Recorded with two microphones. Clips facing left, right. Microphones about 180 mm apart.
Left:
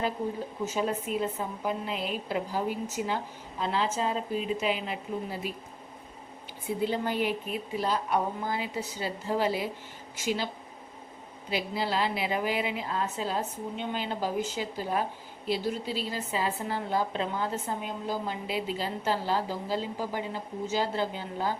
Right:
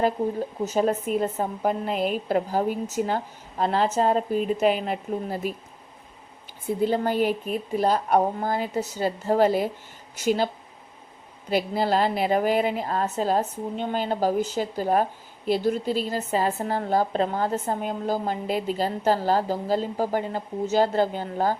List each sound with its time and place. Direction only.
0.6 s a woman's voice: 45° right (ahead or behind)
6.8 s a woman's voice: 45° right (ahead or behind)
11.5 s a woman's voice: 50° right (ahead or behind)